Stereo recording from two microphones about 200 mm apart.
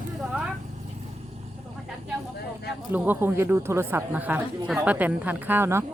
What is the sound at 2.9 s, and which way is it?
Speech, 10° right (ahead or behind).